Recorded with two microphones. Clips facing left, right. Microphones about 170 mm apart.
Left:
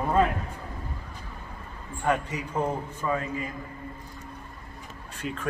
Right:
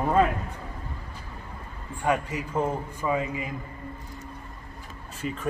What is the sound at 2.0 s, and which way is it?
Speech, 5° right (ahead or behind).